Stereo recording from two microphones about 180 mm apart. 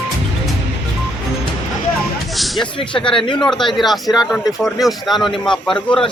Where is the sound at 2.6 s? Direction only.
30° left (ahead or behind).